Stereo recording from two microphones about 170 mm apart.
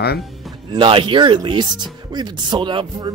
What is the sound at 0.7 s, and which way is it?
Speech, 30° right (ahead or behind).